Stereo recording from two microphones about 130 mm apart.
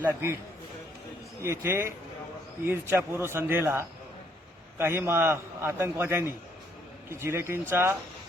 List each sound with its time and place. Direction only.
0.0 s speech: 20° right (ahead or behind)
1.4 s a man's voice: 20° right (ahead or behind)